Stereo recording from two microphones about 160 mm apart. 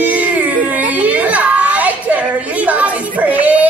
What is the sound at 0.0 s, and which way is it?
Baby cry, 10° right (ahead or behind).